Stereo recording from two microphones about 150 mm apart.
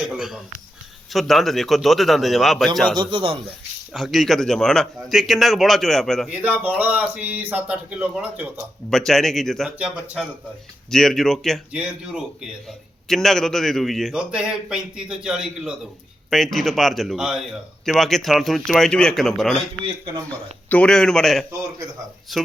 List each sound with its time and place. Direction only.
0.0 s a man's voice: 5° right (ahead or behind)
3.0 s a man's voice: 35° right (ahead or behind)
3.9 s a man's voice: centre (ahead or behind)
6.3 s a man's voice: 10° right (ahead or behind)
8.9 s a man's voice: 5° left (ahead or behind)
10.9 s a man's voice: 5° left (ahead or behind)
20.7 s a man's voice: 10° left (ahead or behind)